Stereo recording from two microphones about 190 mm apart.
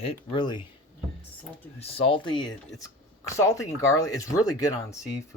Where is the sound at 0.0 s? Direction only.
30° left (ahead or behind).